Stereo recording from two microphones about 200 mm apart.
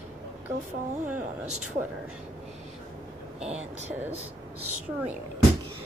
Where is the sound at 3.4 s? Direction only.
35° right (ahead or behind).